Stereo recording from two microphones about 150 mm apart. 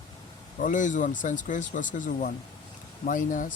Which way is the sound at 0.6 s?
60° left (ahead or behind).